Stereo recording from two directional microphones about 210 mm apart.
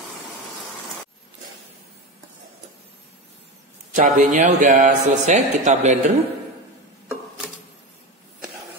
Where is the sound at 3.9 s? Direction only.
35° right (ahead or behind).